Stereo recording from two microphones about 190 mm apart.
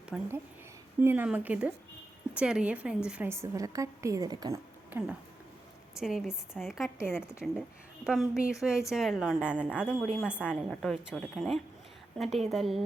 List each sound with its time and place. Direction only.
0.1 s a woman's voice: centre (ahead or behind); by 4.6 s 20° right (ahead or behind)
4.9 s a woman's voice: 10° right (ahead or behind)